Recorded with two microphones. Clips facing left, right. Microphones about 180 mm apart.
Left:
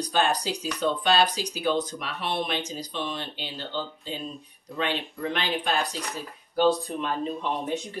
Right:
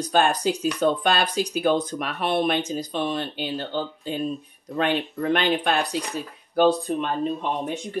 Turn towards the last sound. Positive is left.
turn(degrees=-55)  # may be behind; listen again after turning